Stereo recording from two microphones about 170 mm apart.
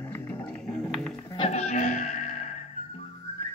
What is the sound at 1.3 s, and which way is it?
Music, 40° left (ahead or behind).